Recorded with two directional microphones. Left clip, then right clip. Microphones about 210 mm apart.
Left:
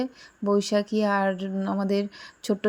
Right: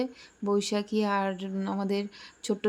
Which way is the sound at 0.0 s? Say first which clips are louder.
Left 3 dB; 15° left (ahead or behind).